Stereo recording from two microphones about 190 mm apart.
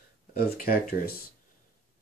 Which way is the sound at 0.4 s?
50° left (ahead or behind).